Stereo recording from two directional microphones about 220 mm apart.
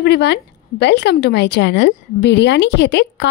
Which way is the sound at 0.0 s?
50° left (ahead or behind).